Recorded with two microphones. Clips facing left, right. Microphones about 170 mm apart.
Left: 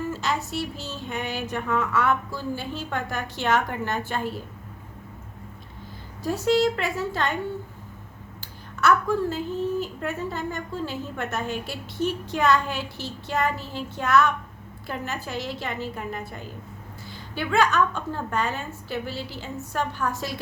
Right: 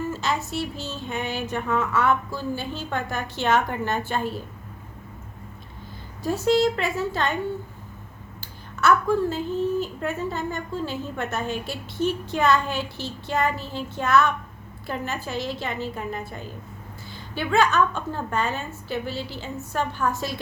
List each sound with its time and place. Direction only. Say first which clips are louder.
0.2 s a woman's voice: right 1 dB; 25° right (ahead or behind)
6.2 s a woman's voice: right 1 dB; 25° right (ahead or behind)
8.4 s a sound: even; 25° right (ahead or behind)
9.8 s a woman's voice: right 2 dB; 25° right (ahead or behind)
17.3 s a woman's voice: right 1 dB; 25° right (ahead or behind)